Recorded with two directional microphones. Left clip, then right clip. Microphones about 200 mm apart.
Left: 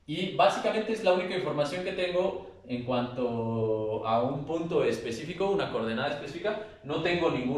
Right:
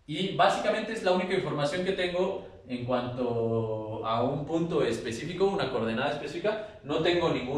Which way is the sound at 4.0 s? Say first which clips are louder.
Left 1 dB; 10° left (ahead or behind).